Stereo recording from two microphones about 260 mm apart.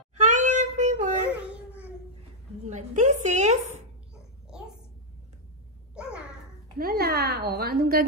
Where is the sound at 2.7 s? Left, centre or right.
Right.